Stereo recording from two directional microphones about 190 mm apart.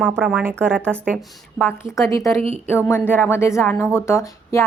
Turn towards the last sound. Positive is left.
turn(degrees=15)  # may be behind; listen again after turning